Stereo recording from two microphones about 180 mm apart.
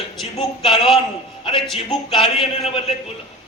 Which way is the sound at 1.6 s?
Centre (ahead or behind).